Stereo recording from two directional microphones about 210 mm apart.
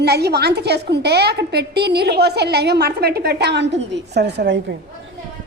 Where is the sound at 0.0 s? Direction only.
50° right (ahead or behind).